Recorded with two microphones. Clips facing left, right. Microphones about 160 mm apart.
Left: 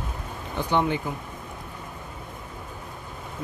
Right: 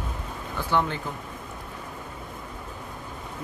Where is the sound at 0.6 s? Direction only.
15° left (ahead or behind).